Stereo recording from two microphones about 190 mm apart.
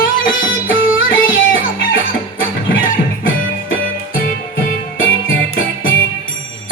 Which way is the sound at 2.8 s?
50° left (ahead or behind).